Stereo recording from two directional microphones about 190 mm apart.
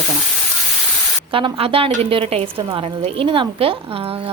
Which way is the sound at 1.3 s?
30° right (ahead or behind).